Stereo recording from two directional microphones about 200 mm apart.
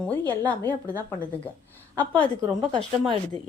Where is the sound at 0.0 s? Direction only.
10° left (ahead or behind).